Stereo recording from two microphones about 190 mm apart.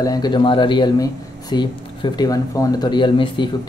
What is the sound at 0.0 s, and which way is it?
Speech, 20° left (ahead or behind).